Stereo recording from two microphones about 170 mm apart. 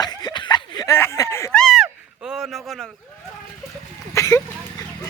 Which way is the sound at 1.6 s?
Centre (ahead or behind).